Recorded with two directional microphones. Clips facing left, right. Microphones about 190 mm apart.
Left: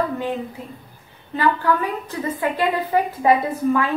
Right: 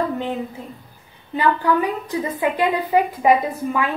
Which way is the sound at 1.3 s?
15° right (ahead or behind).